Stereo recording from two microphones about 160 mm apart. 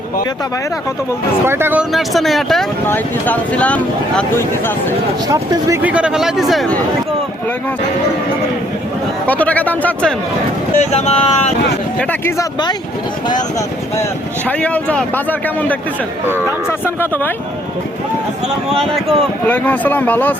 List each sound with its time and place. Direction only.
1.5 s speech: 15° right (ahead or behind); by 2.6 s centre (ahead or behind)
2.8 s speech: 10° left (ahead or behind)
5.3 s speech: 20° right (ahead or behind)
5.8 s speech: 5° right (ahead or behind)
9.2 s speech: 10° left (ahead or behind)
10.8 s speech: 40° left (ahead or behind)
11.9 s speech: 15° left (ahead or behind)
13.9 s speech: 15° left (ahead or behind)
18.7 s speech: 35° right (ahead or behind)
19.5 s speech: 10° left (ahead or behind)